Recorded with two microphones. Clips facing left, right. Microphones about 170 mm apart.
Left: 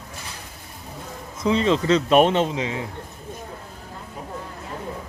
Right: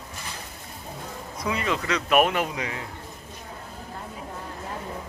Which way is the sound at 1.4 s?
25° left (ahead or behind).